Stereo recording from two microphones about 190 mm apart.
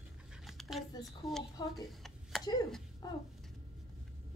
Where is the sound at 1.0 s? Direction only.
Centre (ahead or behind).